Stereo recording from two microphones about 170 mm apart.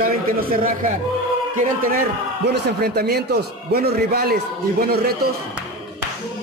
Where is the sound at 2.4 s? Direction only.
75° right (ahead or behind).